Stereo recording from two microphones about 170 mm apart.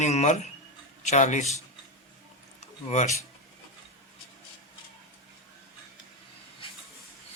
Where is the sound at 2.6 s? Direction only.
40° left (ahead or behind).